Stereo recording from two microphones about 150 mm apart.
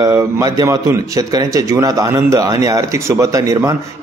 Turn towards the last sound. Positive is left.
turn(degrees=-20)  # may be behind; listen again after turning